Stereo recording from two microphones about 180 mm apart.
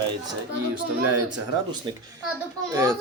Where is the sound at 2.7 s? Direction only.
15° right (ahead or behind).